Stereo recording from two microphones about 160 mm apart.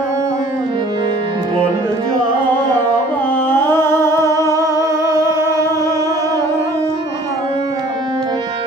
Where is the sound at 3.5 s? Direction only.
15° left (ahead or behind).